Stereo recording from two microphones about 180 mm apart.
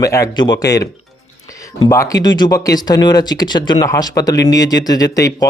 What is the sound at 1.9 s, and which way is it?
Speech, 20° left (ahead or behind).